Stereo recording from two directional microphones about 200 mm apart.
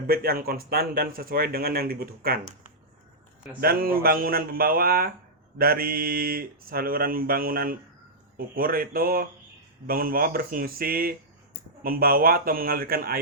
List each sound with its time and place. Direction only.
0.1 s speech: 50° right (ahead or behind)
3.6 s speech: 45° right (ahead or behind)